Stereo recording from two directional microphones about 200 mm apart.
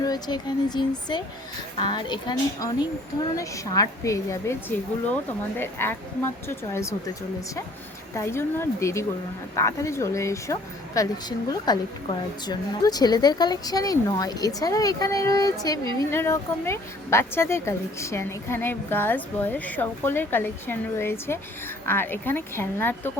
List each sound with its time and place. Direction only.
0.0 s speech: 20° left (ahead or behind)